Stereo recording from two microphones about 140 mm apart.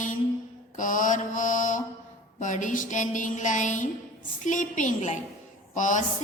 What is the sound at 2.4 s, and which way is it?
A woman's voice, 65° left (ahead or behind).